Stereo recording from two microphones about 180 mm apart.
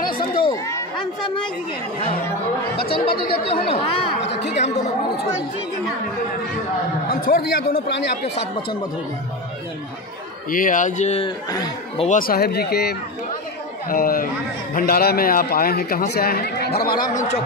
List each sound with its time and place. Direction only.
0.3 s chatter: 25° left (ahead or behind)
3.3 s speech: 30° left (ahead or behind)
7.1 s speech: 55° left (ahead or behind)
10.5 s speech: 45° left (ahead or behind)
12.0 s a man's voice: 45° left (ahead or behind)